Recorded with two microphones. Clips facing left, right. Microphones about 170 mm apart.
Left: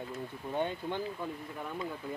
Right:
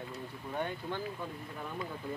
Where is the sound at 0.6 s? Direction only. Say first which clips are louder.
Left 3 dB; 20° left (ahead or behind).